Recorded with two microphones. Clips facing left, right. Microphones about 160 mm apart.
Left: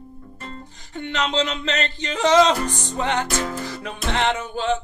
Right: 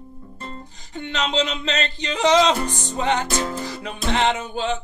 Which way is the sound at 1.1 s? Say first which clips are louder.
Even; 15° right (ahead or behind).